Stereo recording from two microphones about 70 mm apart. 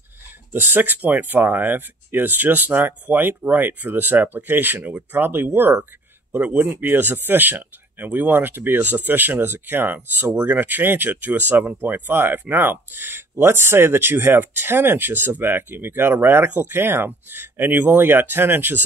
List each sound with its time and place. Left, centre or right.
0.5 s speech: right